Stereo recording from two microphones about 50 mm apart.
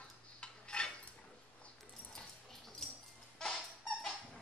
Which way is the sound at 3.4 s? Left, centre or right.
Centre.